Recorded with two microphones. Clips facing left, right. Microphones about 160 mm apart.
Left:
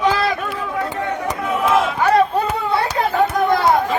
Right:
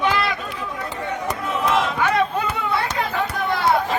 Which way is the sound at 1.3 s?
5° left (ahead or behind).